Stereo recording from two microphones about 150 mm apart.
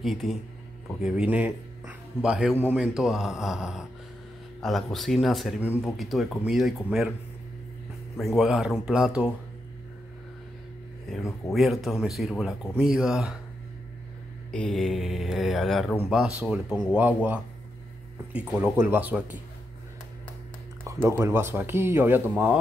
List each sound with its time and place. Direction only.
0.0 s speech: centre (ahead or behind)
8.2 s speech: centre (ahead or behind)
11.5 s speech: centre (ahead or behind)
14.5 s speech: 5° left (ahead or behind)
20.8 s speech: 20° right (ahead or behind)